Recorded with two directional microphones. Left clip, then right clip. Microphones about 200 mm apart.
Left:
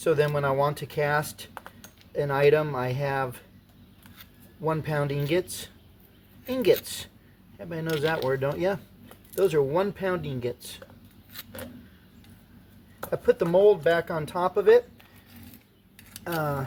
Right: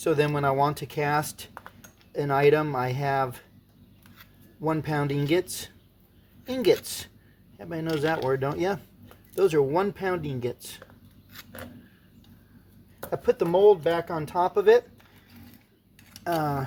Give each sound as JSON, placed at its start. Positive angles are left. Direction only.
{"t": 0.0, "sound": "speech", "side_deg": -40}
{"t": 1.5, "sound": "cutlery", "side_deg": -5}
{"t": 2.1, "sound": "speech", "side_deg": -40}
{"t": 4.6, "sound": "speech", "side_deg": -40}
{"t": 11.3, "sound": "a sound", "side_deg": -5}
{"t": 13.1, "sound": "speech", "side_deg": -35}
{"t": 16.2, "sound": "speech", "side_deg": -40}